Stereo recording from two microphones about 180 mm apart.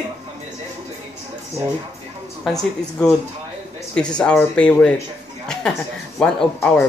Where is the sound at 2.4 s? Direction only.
Centre (ahead or behind).